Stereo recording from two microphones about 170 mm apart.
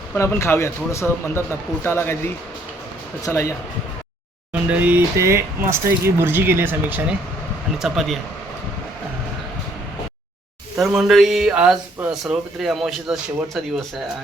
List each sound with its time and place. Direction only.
0.1 s speech: 15° left (ahead or behind)
4.5 s speech: 10° right (ahead or behind)
10.8 s speech: centre (ahead or behind)